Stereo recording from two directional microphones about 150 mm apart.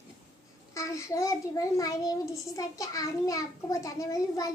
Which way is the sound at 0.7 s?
20° left (ahead or behind).